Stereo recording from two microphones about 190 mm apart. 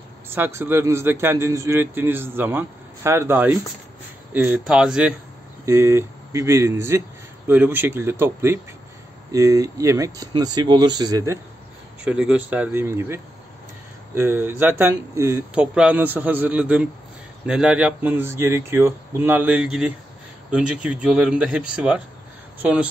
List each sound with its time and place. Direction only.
0.3 s a man's voice: 10° right (ahead or behind)
12.0 s a man's voice: 5° right (ahead or behind)